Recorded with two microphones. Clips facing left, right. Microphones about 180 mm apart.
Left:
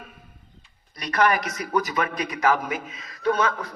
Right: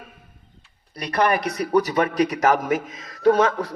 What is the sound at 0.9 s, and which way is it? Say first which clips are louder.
A man's voice: right 1 dB; 30° right (ahead or behind).